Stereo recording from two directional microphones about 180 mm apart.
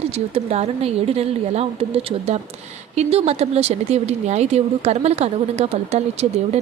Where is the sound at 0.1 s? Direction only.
35° right (ahead or behind).